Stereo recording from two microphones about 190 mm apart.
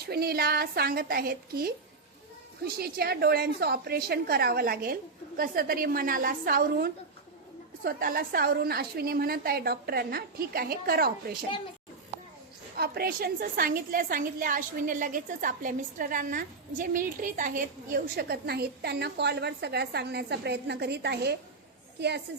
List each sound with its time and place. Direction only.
0.1 s a woman's voice: 55° right (ahead or behind)
12.7 s a woman's voice: 55° right (ahead or behind)